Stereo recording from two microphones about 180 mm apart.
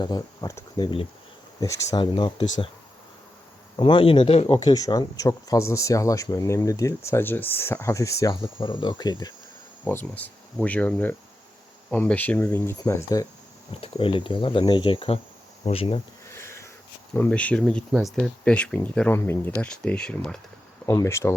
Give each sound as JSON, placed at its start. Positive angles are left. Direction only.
{"t": 0.0, "sound": "speech", "side_deg": 20}
{"t": 3.8, "sound": "speech", "side_deg": 30}
{"t": 9.8, "sound": "speech", "side_deg": 10}
{"t": 13.8, "sound": "speech", "side_deg": 30}
{"t": 16.3, "sound": "sniff", "side_deg": 15}
{"t": 17.2, "sound": "speech", "side_deg": 5}
{"t": 20.8, "sound": "speech", "side_deg": 15}